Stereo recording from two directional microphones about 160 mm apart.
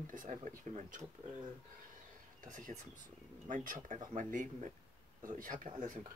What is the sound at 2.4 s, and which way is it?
Speech, 55° right (ahead or behind).